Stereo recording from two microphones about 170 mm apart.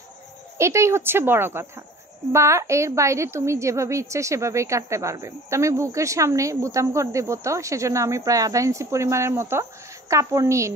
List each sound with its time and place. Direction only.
0.6 s a woman's voice: 15° right (ahead or behind)